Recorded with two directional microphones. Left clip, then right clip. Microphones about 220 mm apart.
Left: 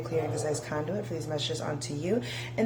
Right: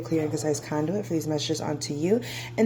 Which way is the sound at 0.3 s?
35° right (ahead or behind).